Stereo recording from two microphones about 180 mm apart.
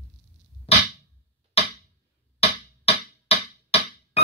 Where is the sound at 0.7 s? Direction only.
35° left (ahead or behind).